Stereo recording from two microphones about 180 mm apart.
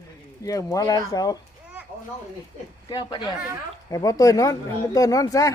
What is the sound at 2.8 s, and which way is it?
Speech, 25° left (ahead or behind).